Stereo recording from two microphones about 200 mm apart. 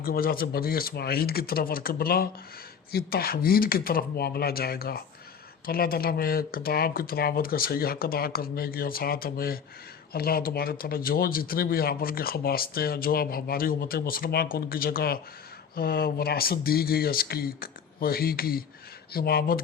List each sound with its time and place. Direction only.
0.0 s speech: 45° left (ahead or behind)